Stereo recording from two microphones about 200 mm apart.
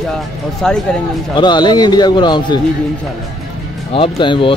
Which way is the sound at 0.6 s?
5° left (ahead or behind).